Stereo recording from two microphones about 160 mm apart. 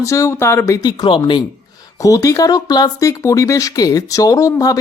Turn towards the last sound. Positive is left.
turn(degrees=20)  # may be behind; listen again after turning